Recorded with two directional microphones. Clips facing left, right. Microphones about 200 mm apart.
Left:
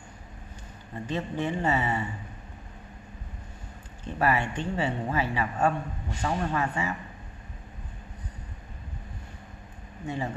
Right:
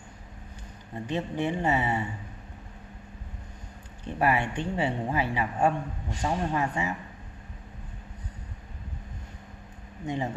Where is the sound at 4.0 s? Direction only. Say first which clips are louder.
Even; 15° right (ahead or behind).